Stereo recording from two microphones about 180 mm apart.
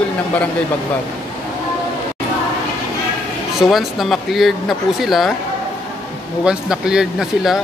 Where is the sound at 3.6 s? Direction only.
Centre (ahead or behind).